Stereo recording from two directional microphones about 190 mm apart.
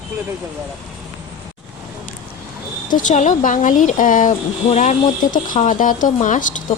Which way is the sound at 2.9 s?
40° left (ahead or behind).